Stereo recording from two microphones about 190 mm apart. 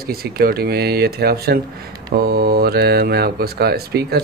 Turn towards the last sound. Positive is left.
turn(degrees=-55)  # may be behind; listen again after turning